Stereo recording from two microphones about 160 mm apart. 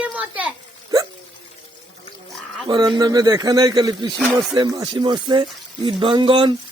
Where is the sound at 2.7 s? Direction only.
25° right (ahead or behind).